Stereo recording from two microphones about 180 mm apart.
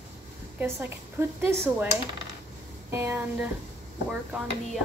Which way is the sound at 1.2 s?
15° right (ahead or behind).